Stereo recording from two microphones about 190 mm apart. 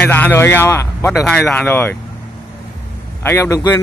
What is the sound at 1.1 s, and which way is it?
Speech, centre (ahead or behind).